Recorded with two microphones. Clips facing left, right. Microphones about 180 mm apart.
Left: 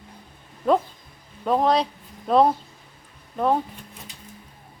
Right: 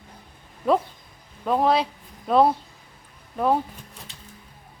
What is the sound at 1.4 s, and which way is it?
Speech, 5° right (ahead or behind).